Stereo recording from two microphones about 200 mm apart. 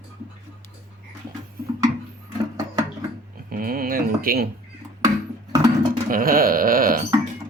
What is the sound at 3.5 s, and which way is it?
Speech, 45° right (ahead or behind).